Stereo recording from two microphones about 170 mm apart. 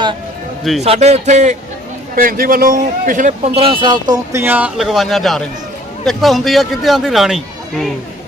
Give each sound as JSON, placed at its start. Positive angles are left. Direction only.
{"t": 0.8, "sound": "speech", "side_deg": -40}
{"t": 2.1, "sound": "a man's voice", "side_deg": -55}